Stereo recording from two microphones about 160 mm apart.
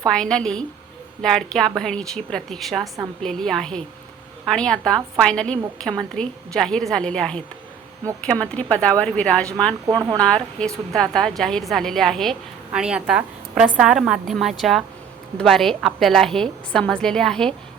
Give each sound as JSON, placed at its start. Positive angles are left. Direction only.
{"t": 0.0, "sound": "a woman's voice", "side_deg": 5}
{"t": 9.8, "sound": "speech", "side_deg": -25}
{"t": 10.2, "sound": "a woman's voice", "side_deg": 5}